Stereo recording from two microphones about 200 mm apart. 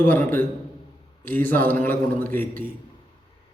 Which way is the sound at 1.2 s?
10° left (ahead or behind).